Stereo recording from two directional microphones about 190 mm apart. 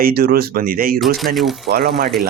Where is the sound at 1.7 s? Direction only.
55° right (ahead or behind).